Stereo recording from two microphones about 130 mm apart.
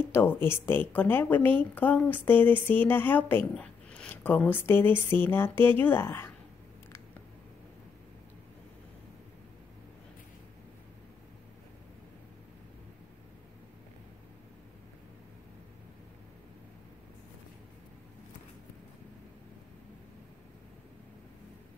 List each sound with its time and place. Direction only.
0.1 s a woman's voice: 15° left (ahead or behind)